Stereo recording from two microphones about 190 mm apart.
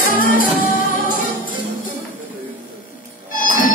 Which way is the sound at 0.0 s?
45° left (ahead or behind).